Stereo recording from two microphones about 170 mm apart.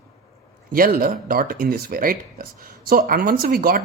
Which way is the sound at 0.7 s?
60° right (ahead or behind).